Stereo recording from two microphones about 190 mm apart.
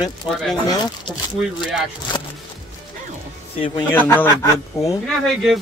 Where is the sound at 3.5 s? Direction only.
25° left (ahead or behind).